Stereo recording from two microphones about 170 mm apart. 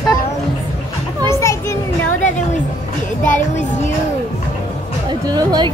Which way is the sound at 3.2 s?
45° left (ahead or behind).